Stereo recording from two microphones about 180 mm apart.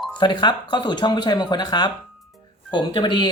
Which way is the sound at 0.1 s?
25° left (ahead or behind).